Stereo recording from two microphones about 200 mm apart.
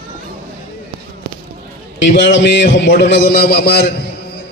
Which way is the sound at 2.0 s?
65° left (ahead or behind).